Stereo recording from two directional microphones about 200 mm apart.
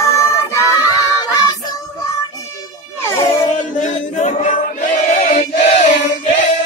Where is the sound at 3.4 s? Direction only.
40° left (ahead or behind).